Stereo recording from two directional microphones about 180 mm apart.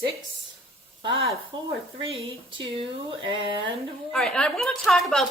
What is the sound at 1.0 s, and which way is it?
Speech, 30° right (ahead or behind).